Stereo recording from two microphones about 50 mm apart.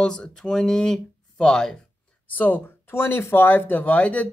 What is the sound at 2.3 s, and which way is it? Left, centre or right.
Speech, left.